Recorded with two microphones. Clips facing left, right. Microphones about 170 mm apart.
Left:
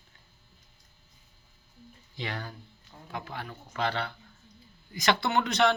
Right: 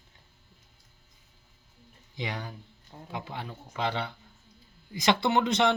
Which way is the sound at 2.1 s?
15° right (ahead or behind).